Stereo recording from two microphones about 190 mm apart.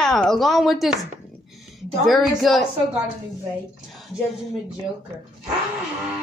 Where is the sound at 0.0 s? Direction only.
5° left (ahead or behind).